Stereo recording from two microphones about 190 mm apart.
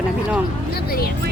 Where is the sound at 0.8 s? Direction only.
55° left (ahead or behind).